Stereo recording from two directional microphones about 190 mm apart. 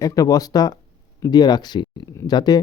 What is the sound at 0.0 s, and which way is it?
Speech, 20° left (ahead or behind).